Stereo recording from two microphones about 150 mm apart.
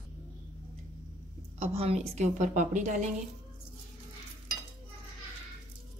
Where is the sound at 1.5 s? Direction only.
40° right (ahead or behind).